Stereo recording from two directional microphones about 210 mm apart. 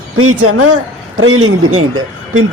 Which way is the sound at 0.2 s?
90° right.